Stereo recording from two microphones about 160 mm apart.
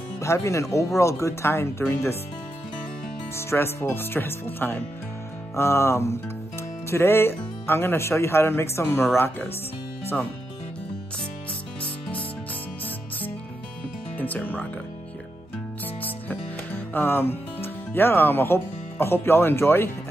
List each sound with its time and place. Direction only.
0.2 s speech: 20° left (ahead or behind)
3.3 s speech: 15° left (ahead or behind)
14.1 s speech: 10° left (ahead or behind)
16.0 s music: 10° left (ahead or behind)